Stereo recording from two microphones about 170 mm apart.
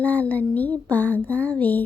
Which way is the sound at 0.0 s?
10° left (ahead or behind).